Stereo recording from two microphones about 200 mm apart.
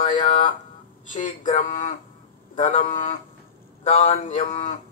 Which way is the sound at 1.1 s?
35° left (ahead or behind).